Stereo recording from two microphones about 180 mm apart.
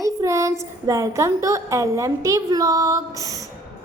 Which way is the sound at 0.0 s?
15° right (ahead or behind).